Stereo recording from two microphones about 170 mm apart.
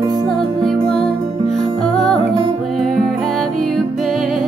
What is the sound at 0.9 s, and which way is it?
Music, 30° left (ahead or behind).